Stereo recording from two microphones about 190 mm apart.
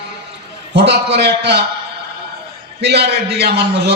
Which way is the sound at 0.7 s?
60° right (ahead or behind).